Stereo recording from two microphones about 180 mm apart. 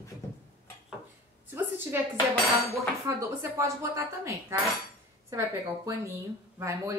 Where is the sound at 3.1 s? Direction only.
15° right (ahead or behind).